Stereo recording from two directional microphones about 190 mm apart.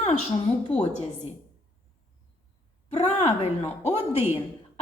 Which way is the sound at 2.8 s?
35° left (ahead or behind).